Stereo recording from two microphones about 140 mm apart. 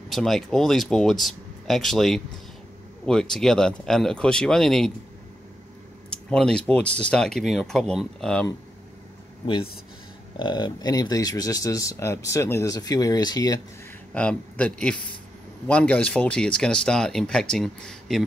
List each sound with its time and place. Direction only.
0.1 s speech: centre (ahead or behind)
6.3 s speech: 5° left (ahead or behind)
10.4 s speech: 35° left (ahead or behind)
14.1 s speech: 10° left (ahead or behind)